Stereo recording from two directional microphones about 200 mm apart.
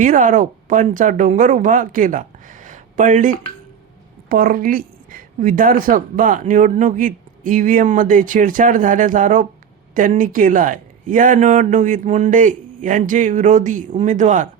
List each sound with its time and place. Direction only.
0.0 s a woman's voice: 40° right (ahead or behind)